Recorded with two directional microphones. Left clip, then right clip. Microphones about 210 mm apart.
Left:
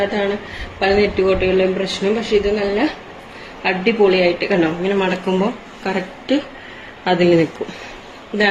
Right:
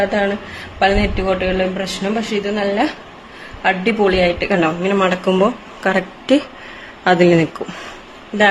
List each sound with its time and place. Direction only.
0.0 s a man's voice: 55° right (ahead or behind)